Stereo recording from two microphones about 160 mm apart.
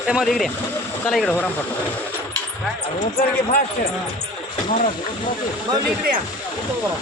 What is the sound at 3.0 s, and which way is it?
Speech, 65° left (ahead or behind).